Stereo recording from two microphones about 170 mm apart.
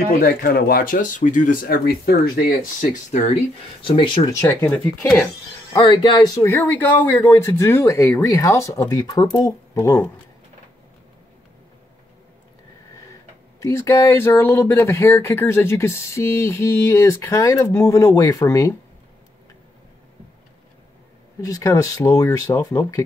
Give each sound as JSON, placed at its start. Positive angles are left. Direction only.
{"t": 0.2, "sound": "speech", "side_deg": 65}
{"t": 3.8, "sound": "speech", "side_deg": 30}
{"t": 4.3, "sound": "speech", "side_deg": 15}
{"t": 5.7, "sound": "speech", "side_deg": 20}
{"t": 13.6, "sound": "speech", "side_deg": 15}
{"t": 21.4, "sound": "speech", "side_deg": 20}